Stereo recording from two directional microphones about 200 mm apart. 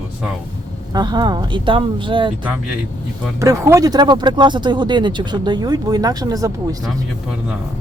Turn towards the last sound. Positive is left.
turn(degrees=-15)  # may be behind; listen again after turning